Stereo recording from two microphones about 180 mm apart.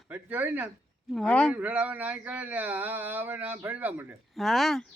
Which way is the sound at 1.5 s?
10° right (ahead or behind).